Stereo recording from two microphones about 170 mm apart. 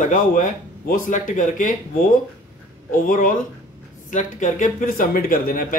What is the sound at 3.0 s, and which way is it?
Speech, 50° left (ahead or behind).